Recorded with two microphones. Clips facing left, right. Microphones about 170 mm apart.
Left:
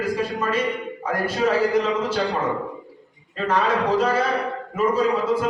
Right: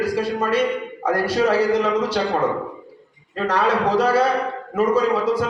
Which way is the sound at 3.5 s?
75° right (ahead or behind).